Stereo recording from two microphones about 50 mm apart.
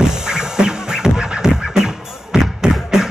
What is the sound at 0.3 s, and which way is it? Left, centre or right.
Music, centre.